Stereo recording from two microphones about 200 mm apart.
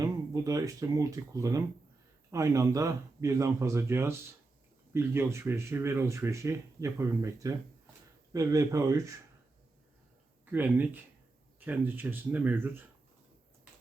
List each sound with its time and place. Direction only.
0.0 s speech: 15° right (ahead or behind)
10.4 s speech: 10° right (ahead or behind)